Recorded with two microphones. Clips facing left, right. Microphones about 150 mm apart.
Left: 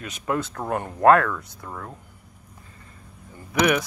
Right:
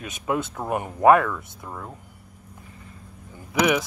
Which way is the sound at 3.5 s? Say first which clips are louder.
Even; 10° right (ahead or behind).